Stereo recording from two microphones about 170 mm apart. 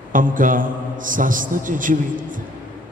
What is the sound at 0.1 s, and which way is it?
A man's voice, 50° right (ahead or behind).